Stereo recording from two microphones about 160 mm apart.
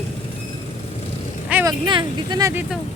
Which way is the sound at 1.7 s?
30° right (ahead or behind).